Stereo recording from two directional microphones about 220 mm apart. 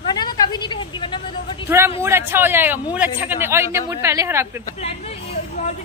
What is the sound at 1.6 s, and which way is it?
A woman's voice, 10° right (ahead or behind).